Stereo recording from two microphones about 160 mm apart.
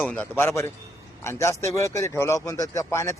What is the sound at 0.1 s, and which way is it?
A man's voice, 10° left (ahead or behind).